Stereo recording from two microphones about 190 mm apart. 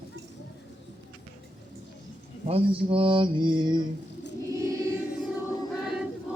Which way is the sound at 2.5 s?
30° right (ahead or behind).